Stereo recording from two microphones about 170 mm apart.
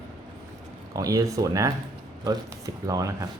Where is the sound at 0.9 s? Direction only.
20° right (ahead or behind).